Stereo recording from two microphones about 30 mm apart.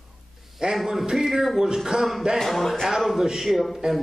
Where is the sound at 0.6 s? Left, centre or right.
Right.